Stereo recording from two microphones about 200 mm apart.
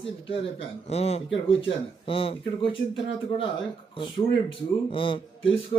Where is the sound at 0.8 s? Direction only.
30° left (ahead or behind).